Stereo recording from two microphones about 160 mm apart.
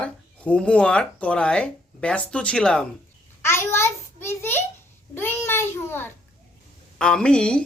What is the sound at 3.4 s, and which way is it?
A child's voice, 15° left (ahead or behind).